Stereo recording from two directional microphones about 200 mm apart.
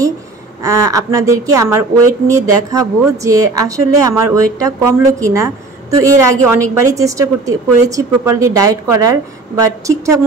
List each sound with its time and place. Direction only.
0.7 s a woman's voice: 15° right (ahead or behind)